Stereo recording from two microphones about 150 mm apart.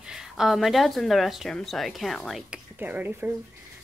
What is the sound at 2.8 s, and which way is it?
Speech, 10° right (ahead or behind).